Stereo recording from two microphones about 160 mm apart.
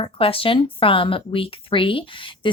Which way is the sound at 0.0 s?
35° left (ahead or behind).